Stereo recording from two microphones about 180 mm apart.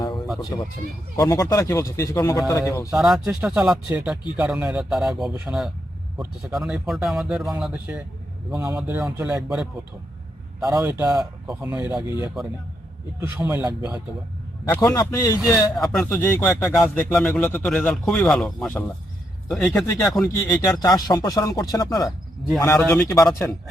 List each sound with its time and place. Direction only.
1.1 s speech: 20° left (ahead or behind)
2.9 s a man's voice: centre (ahead or behind)
10.6 s a man's voice: 20° right (ahead or behind)
11.4 s speech: 5° right (ahead or behind)
13.1 s a man's voice: 10° right (ahead or behind)
14.6 s speech: 20° left (ahead or behind)
15.7 s speech: centre (ahead or behind)
20.2 s speech: 15° left (ahead or behind)